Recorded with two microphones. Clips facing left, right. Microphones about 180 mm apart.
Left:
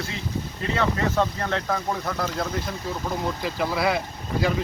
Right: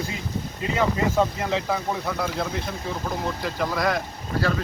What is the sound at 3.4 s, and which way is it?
Speech, 10° left (ahead or behind).